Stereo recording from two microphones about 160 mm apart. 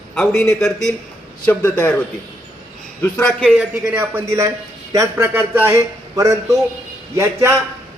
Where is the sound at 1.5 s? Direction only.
10° left (ahead or behind).